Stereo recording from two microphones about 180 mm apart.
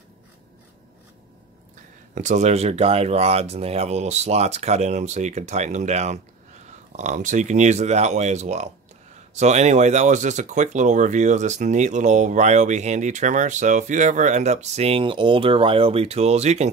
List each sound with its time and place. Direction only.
2.1 s speech: 40° right (ahead or behind)